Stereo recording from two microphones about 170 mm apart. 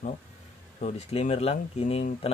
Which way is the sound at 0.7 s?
40° left (ahead or behind).